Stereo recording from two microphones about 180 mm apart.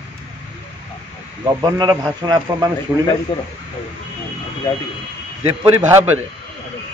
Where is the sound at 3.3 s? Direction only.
25° left (ahead or behind).